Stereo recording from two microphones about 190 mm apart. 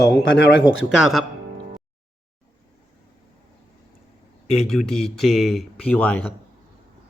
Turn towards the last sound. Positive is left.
turn(degrees=5)  # may be behind; listen again after turning